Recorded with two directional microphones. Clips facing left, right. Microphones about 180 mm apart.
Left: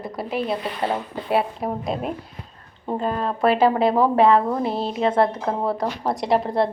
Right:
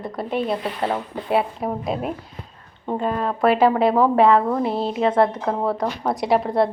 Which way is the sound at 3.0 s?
30° left (ahead or behind).